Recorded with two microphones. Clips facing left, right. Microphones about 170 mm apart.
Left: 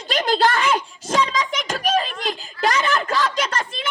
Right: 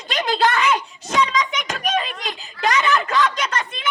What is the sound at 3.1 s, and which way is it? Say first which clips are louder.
Speech: right 1 dB; 35° left (ahead or behind).